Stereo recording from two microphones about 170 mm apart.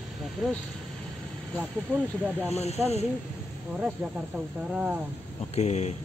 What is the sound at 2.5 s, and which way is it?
Speech, 40° left (ahead or behind).